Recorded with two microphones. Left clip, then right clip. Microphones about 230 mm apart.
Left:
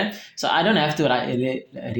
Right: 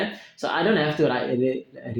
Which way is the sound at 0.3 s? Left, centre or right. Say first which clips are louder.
Left 3 dB; left.